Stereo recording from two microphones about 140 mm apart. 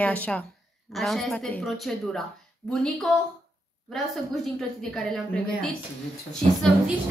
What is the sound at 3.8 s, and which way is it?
A woman's voice, centre (ahead or behind).